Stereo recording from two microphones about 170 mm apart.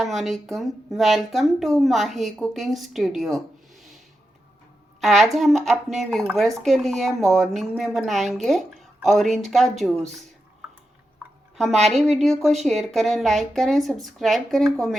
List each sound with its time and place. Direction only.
0.0 s speech: centre (ahead or behind)
4.9 s speech: centre (ahead or behind)
11.5 s speech: centre (ahead or behind)